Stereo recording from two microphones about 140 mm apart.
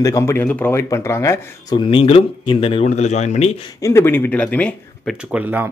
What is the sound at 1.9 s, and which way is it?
Speech, 40° left (ahead or behind).